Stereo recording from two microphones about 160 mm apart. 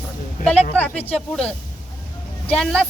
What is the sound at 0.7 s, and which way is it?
A man's voice, 10° left (ahead or behind).